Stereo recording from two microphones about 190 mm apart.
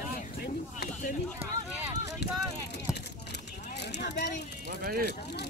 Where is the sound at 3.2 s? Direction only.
60° left (ahead or behind).